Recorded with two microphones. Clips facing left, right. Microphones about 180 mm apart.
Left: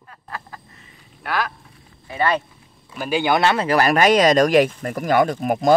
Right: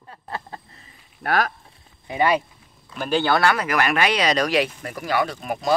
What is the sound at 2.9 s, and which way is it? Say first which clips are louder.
Speech: left 1 dB; 10° left (ahead or behind).